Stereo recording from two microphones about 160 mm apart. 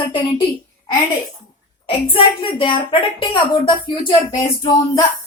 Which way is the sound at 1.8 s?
35° left (ahead or behind).